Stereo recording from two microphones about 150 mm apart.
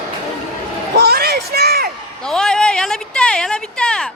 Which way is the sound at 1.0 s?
90° right.